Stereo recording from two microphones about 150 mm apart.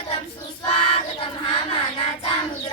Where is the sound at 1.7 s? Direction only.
35° left (ahead or behind).